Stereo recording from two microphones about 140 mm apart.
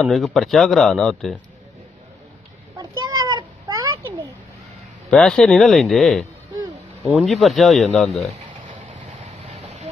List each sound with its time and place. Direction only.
0.0 s a man's voice: centre (ahead or behind)
2.8 s cat: 30° right (ahead or behind)
5.1 s a man's voice: 5° left (ahead or behind)
7.2 s a man's voice: centre (ahead or behind)
9.5 s vehicle: 50° right (ahead or behind)